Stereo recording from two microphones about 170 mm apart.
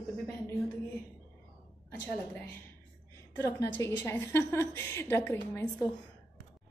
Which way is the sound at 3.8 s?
15° left (ahead or behind).